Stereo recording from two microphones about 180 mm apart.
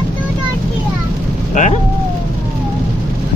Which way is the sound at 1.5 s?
45° left (ahead or behind).